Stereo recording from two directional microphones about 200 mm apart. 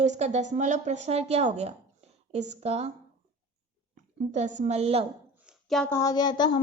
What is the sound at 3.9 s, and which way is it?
A woman's voice, 40° right (ahead or behind).